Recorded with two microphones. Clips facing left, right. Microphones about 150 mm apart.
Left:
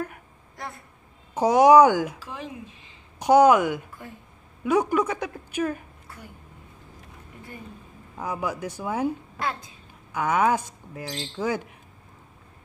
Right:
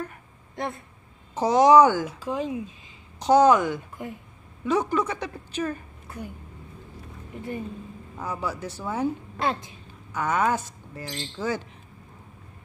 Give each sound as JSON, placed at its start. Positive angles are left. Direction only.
{"t": 0.6, "sound": "speech", "side_deg": -25}
{"t": 1.3, "sound": "speech", "side_deg": 10}
{"t": 2.1, "sound": "speech", "side_deg": -20}
{"t": 3.2, "sound": "speech", "side_deg": 10}
{"t": 6.0, "sound": "a sound", "side_deg": -20}
{"t": 8.2, "sound": "speech", "side_deg": 10}
{"t": 9.4, "sound": "speech", "side_deg": -25}
{"t": 10.1, "sound": "speech", "side_deg": 10}